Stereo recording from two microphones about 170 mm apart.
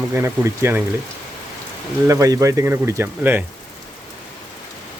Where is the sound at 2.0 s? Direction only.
20° right (ahead or behind).